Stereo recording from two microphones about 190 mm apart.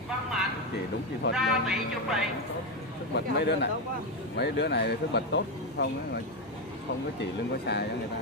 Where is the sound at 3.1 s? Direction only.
60° left (ahead or behind).